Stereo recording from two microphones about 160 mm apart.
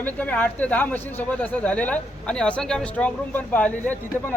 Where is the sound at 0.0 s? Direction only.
10° left (ahead or behind).